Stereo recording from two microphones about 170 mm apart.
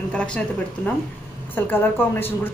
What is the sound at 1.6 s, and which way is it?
Speech, 10° left (ahead or behind).